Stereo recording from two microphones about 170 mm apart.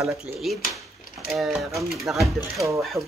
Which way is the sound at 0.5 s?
Centre (ahead or behind).